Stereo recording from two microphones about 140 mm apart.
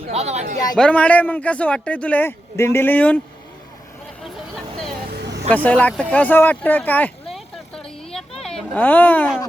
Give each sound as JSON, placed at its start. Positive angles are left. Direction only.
{"t": 0.1, "sound": "speech", "side_deg": -50}
{"t": 0.8, "sound": "speech", "side_deg": 10}
{"t": 4.2, "sound": "vehicle", "side_deg": 0}
{"t": 5.6, "sound": "speech", "side_deg": 10}
{"t": 7.3, "sound": "vehicle", "side_deg": 0}
{"t": 8.7, "sound": "speech", "side_deg": 10}